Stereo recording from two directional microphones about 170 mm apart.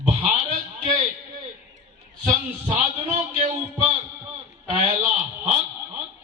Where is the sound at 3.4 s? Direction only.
40° right (ahead or behind).